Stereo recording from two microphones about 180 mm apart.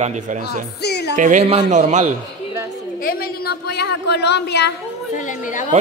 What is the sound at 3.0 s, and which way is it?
A woman's voice, 55° left (ahead or behind).